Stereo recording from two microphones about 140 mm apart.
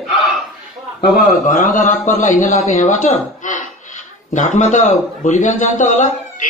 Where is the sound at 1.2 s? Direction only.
70° left (ahead or behind).